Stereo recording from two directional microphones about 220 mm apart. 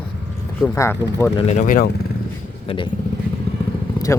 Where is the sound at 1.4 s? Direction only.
30° left (ahead or behind).